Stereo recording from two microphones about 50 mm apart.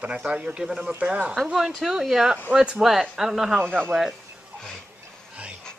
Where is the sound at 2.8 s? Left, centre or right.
Centre.